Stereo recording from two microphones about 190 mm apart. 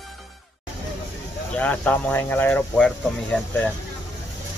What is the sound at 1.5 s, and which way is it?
Speech, 10° left (ahead or behind).